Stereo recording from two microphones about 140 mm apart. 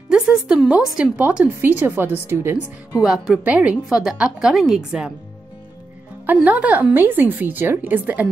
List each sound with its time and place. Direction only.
0.1 s a woman's voice: 5° right (ahead or behind)
6.2 s a woman's voice: 10° right (ahead or behind)